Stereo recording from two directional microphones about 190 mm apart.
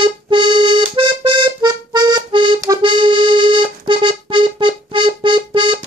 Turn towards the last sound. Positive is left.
turn(degrees=-25)  # may be behind; listen again after turning